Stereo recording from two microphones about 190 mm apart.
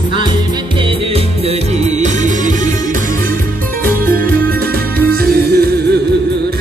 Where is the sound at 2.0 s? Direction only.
40° right (ahead or behind).